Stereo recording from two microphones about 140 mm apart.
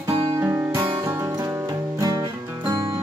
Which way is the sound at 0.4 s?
20° right (ahead or behind).